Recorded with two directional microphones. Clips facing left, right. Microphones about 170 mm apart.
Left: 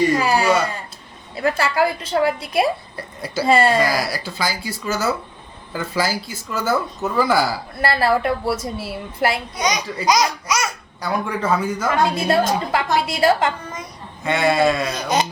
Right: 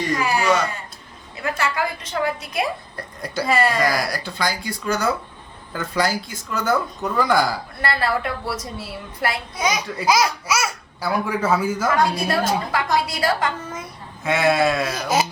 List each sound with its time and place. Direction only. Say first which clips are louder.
0.2 s a woman's voice: left 2 dB; 35° left (ahead or behind)
2.9 s speech: left 2 dB; 5° left (ahead or behind)
3.4 s a woman's voice: left 4 dB; 30° left (ahead or behind)
3.8 s speech: even; 5° left (ahead or behind)
7.8 s a woman's voice: left 5 dB; 30° left (ahead or behind)
9.6 s speech: left 1 dB; 5° right (ahead or behind)
11.9 s a woman's voice: left 3 dB; 25° left (ahead or behind)
14.3 s speech: left 1 dB; centre (ahead or behind)